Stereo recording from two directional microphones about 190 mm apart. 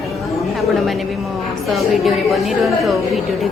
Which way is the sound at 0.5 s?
Centre (ahead or behind).